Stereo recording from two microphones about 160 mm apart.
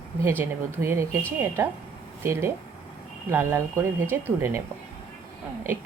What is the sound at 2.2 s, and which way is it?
Speech, 15° right (ahead or behind).